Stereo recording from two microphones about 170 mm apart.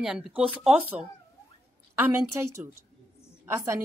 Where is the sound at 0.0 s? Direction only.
5° right (ahead or behind).